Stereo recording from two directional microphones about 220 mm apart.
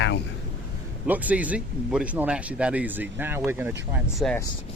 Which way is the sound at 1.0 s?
5° right (ahead or behind).